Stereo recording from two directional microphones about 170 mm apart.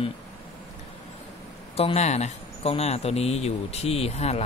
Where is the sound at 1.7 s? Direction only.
40° left (ahead or behind).